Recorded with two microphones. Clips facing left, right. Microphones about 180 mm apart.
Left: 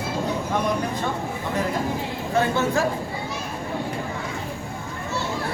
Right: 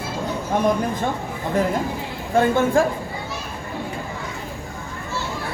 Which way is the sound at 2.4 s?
50° right (ahead or behind).